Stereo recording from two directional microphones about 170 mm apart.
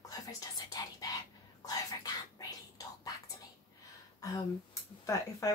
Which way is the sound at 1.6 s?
20° left (ahead or behind).